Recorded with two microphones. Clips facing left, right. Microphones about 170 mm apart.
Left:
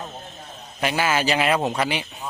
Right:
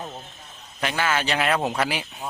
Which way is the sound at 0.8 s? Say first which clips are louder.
Left 3 dB; 10° left (ahead or behind).